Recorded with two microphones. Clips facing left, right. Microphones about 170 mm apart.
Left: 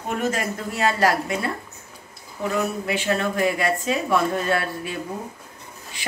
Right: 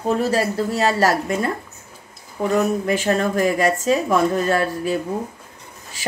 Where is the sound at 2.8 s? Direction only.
45° right (ahead or behind).